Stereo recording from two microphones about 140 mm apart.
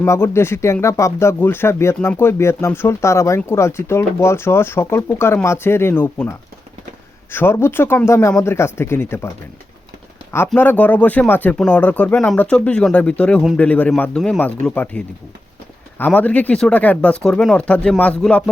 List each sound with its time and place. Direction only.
0.0 s speech: 15° left (ahead or behind)
10.3 s speech: 15° left (ahead or behind)